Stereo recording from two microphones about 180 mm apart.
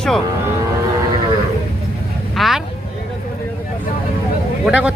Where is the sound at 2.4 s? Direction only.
Centre (ahead or behind).